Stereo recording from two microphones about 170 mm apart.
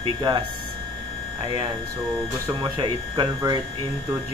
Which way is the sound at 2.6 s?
25° right (ahead or behind).